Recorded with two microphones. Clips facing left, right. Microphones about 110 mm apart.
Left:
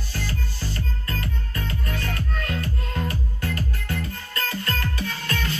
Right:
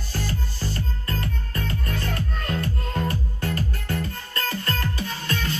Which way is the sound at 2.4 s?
35° right (ahead or behind).